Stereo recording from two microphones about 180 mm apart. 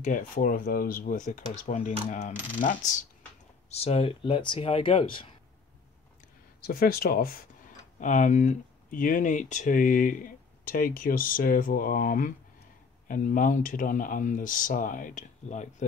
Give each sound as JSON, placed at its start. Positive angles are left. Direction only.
{"t": 0.0, "sound": "speech", "side_deg": 50}
{"t": 3.7, "sound": "speech", "side_deg": 35}
{"t": 6.6, "sound": "speech", "side_deg": 55}
{"t": 8.0, "sound": "speech", "side_deg": 45}